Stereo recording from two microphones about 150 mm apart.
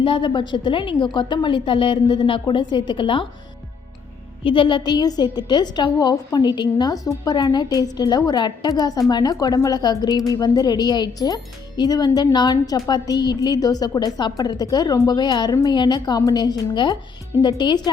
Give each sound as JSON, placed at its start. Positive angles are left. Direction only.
{"t": 0.0, "sound": "a woman's voice", "side_deg": 35}
{"t": 4.4, "sound": "a woman's voice", "side_deg": 35}